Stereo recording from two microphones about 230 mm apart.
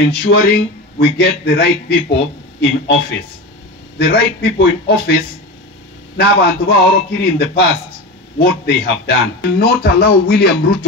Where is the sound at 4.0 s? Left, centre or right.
Left.